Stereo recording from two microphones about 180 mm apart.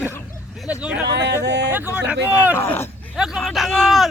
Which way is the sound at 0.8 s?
5° right (ahead or behind).